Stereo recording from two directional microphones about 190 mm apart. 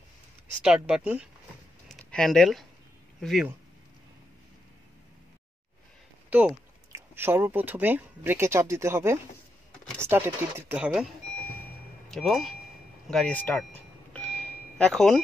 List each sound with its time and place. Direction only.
0.6 s speech: 5° right (ahead or behind)
1.9 s a sound: 5° left (ahead or behind)
3.2 s speech: centre (ahead or behind)
6.3 s speech: 5° right (ahead or behind)
12.1 s speech: centre (ahead or behind)
14.1 s ding: 5° left (ahead or behind)